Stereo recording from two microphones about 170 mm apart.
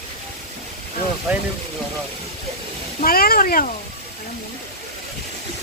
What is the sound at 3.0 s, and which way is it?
Speech, 60° left (ahead or behind).